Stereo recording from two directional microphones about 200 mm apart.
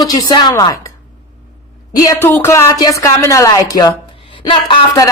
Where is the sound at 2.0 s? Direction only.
15° left (ahead or behind).